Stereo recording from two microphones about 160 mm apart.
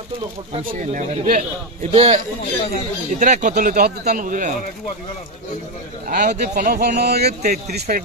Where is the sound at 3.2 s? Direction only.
50° right (ahead or behind).